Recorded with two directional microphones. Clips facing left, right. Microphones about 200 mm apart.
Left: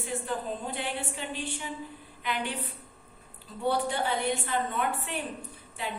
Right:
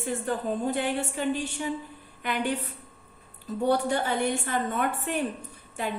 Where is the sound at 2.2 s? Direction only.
45° right (ahead or behind).